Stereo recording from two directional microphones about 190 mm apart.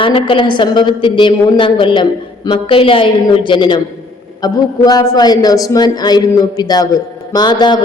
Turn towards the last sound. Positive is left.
turn(degrees=20)  # may be behind; listen again after turning